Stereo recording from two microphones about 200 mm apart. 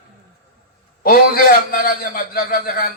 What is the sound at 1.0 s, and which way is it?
A man's voice, 45° left (ahead or behind).